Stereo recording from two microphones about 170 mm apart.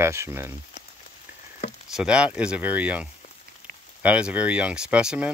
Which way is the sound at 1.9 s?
5° right (ahead or behind).